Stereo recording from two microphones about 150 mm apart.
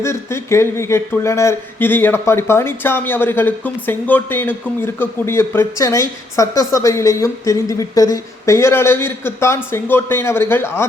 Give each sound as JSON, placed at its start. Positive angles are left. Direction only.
{"t": 0.0, "sound": "speech", "side_deg": 15}